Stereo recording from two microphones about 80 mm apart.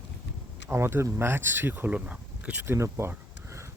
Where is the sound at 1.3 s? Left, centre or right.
Right.